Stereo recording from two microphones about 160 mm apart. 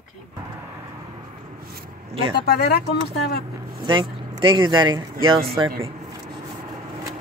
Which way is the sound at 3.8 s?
30° right (ahead or behind).